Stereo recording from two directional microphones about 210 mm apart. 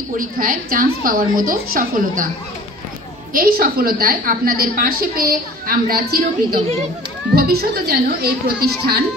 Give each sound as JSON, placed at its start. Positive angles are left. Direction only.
{"t": 0.2, "sound": "a woman's voice", "side_deg": -40}
{"t": 3.3, "sound": "a woman's voice", "side_deg": -45}